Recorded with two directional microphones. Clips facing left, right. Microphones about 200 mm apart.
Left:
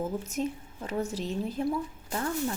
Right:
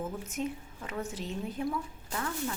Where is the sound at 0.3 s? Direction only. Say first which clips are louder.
Left 3 dB; 35° left (ahead or behind).